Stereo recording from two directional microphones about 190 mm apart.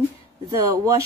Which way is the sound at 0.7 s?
15° right (ahead or behind).